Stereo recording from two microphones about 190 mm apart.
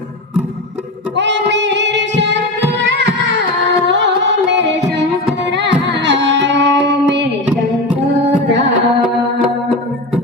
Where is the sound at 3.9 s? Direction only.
70° right (ahead or behind).